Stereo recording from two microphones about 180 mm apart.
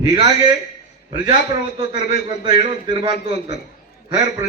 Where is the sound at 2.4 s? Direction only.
25° right (ahead or behind).